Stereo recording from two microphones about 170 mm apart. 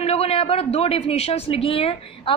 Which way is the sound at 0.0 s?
35° left (ahead or behind).